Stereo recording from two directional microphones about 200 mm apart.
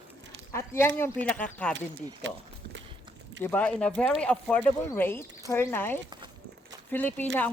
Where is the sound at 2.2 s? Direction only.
65° right (ahead or behind).